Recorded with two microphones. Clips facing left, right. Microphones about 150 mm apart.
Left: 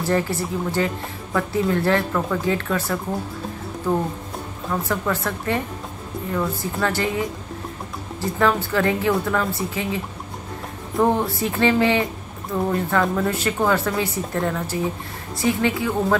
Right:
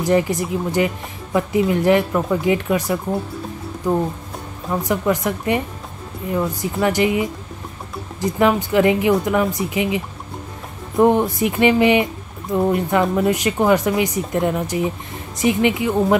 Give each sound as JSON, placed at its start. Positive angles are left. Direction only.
{"t": 0.0, "sound": "speech", "side_deg": -15}